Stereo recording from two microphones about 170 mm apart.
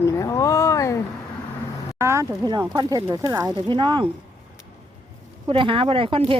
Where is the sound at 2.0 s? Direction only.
15° right (ahead or behind).